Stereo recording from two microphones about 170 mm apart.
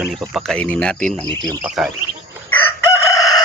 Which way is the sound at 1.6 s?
5° right (ahead or behind).